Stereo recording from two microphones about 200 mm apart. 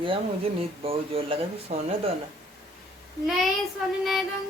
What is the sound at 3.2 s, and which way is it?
A child's voice, centre (ahead or behind).